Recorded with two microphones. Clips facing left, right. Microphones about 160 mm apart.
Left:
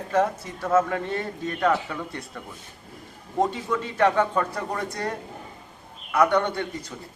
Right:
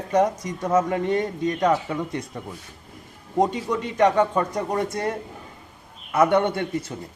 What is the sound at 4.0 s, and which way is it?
A man's voice, 10° right (ahead or behind).